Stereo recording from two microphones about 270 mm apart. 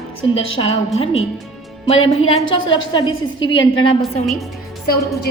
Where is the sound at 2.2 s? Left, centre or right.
Left.